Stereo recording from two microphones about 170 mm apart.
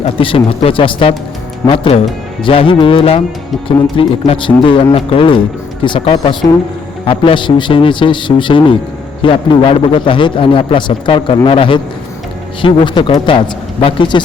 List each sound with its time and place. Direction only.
0.0 s a man's voice: 30° left (ahead or behind)